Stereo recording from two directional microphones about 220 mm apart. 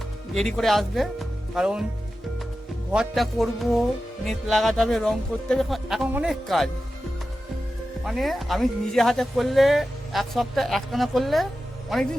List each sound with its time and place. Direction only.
0.3 s speech: centre (ahead or behind)
2.9 s speech: centre (ahead or behind)
8.0 s speech: centre (ahead or behind)